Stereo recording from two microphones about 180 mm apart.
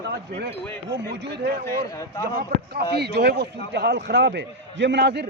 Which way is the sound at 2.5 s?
65° right (ahead or behind).